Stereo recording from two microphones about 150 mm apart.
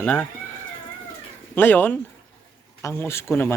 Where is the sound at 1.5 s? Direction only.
10° left (ahead or behind).